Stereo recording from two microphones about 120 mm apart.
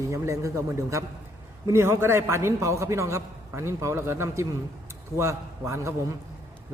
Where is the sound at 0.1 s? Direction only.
25° right (ahead or behind).